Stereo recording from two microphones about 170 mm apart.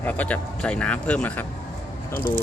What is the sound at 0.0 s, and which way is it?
Speech, 10° left (ahead or behind).